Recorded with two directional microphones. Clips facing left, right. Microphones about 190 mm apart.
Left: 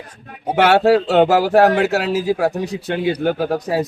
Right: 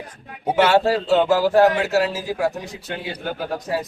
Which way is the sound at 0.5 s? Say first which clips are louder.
Left 4 dB; 60° left (ahead or behind).